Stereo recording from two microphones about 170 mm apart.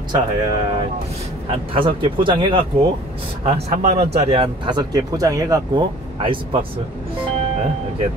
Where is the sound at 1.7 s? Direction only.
30° right (ahead or behind).